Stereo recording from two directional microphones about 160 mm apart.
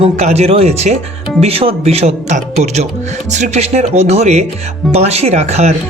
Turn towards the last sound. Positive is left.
turn(degrees=-45)  # may be behind; listen again after turning